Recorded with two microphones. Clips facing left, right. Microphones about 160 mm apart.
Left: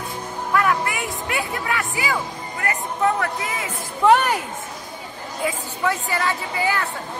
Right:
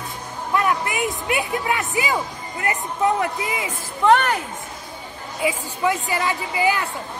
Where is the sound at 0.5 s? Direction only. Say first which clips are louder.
Even; 20° right (ahead or behind).